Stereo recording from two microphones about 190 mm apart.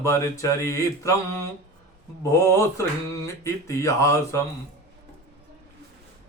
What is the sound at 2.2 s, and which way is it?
Speech, 15° left (ahead or behind).